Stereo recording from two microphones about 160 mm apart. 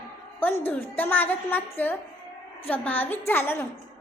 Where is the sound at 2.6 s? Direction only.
10° left (ahead or behind).